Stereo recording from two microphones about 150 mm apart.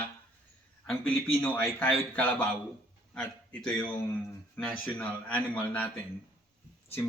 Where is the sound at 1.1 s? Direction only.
15° left (ahead or behind).